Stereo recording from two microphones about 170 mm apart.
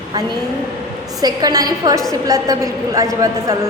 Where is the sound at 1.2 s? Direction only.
20° right (ahead or behind).